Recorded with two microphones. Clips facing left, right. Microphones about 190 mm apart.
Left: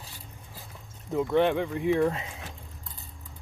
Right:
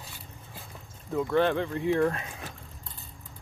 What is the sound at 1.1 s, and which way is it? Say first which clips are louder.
Speech: left 1 dB; 20° left (ahead or behind).